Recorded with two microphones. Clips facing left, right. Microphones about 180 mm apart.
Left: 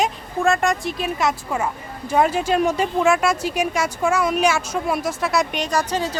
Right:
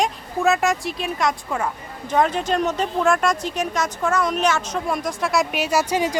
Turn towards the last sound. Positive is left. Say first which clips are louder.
# right 2 dB
turn(degrees=-10)  # may be behind; listen again after turning